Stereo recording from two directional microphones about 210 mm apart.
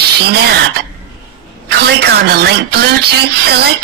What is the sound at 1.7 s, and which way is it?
Speech, 50° right (ahead or behind).